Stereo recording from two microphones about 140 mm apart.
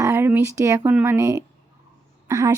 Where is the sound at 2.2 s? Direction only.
25° right (ahead or behind).